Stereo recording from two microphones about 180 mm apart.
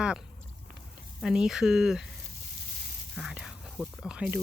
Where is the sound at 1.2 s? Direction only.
5° right (ahead or behind).